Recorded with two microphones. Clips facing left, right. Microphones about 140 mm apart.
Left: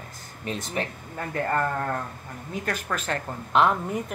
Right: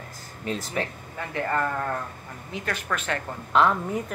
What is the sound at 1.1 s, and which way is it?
Speech, 40° left (ahead or behind).